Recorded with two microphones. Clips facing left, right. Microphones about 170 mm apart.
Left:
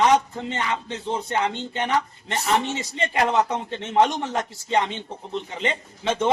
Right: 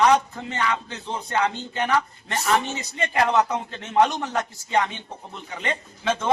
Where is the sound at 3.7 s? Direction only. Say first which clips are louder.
Left 1 dB; 25° left (ahead or behind).